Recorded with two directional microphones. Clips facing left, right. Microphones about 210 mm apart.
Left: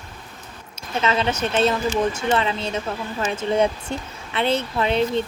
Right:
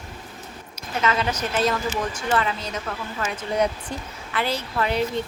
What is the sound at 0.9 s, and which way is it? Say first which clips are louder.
A woman's voice: left 2 dB; 25° left (ahead or behind).